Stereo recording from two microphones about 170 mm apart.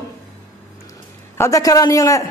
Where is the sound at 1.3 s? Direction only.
20° left (ahead or behind).